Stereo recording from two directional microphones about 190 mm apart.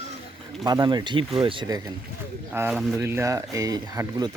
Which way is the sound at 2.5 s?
10° right (ahead or behind).